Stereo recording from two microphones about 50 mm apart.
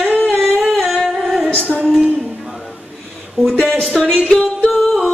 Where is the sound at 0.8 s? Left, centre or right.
Centre.